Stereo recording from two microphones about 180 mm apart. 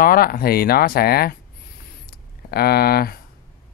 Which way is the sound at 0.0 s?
55° left (ahead or behind).